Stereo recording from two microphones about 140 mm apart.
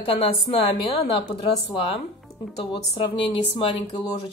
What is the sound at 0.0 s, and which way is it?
A woman's voice, 40° left (ahead or behind).